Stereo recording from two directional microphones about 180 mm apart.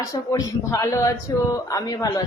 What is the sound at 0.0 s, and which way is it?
Speech, 20° left (ahead or behind).